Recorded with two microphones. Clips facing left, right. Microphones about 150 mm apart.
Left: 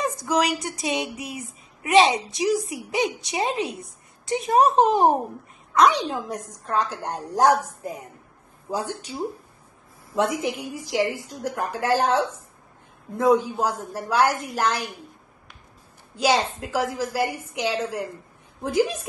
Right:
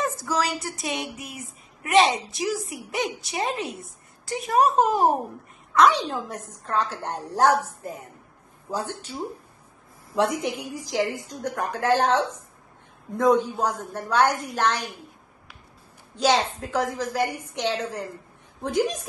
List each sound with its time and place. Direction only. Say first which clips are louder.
0.0 s a sound: left 3 dB; 15° left (ahead or behind)
0.8 s a woman's voice: left 5 dB; 20° left (ahead or behind)
5.9 s a woman's voice: left 1 dB; 15° left (ahead or behind)
16.2 s a woman's voice: even; 10° left (ahead or behind)